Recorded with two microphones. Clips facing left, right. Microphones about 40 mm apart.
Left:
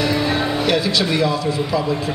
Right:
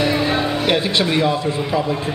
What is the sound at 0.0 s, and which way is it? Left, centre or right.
Speech, right.